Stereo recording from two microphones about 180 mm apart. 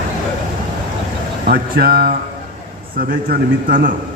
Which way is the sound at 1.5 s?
60° right (ahead or behind).